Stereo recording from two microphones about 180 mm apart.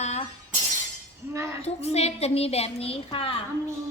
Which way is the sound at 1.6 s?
35° left (ahead or behind).